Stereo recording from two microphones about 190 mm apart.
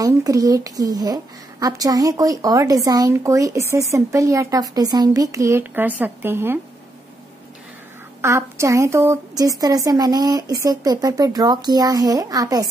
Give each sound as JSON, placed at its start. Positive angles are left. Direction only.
{"t": 0.0, "sound": "a woman's voice", "side_deg": -20}
{"t": 8.2, "sound": "a woman's voice", "side_deg": -15}